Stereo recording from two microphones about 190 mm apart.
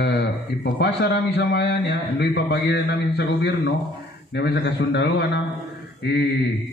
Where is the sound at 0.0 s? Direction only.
65° left (ahead or behind).